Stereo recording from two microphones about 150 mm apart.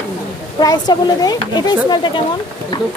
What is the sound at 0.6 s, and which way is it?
Speech, 25° left (ahead or behind).